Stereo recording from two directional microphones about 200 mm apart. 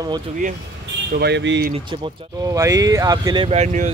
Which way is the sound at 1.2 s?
60° right (ahead or behind).